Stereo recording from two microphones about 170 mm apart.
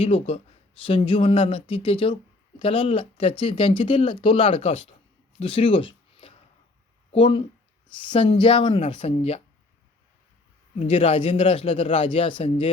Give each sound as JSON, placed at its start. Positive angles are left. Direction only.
{"t": 0.0, "sound": "speech", "side_deg": 40}
{"t": 5.4, "sound": "a sound", "side_deg": 30}
{"t": 7.1, "sound": "speech", "side_deg": 30}
{"t": 10.8, "sound": "speech", "side_deg": 35}